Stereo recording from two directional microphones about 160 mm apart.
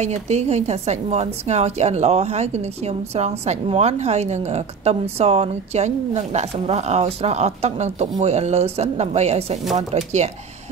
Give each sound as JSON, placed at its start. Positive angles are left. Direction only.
{"t": 0.0, "sound": "a woman's voice", "side_deg": -45}